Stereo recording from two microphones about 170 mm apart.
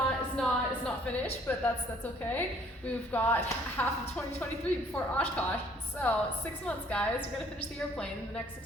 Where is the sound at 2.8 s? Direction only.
10° left (ahead or behind).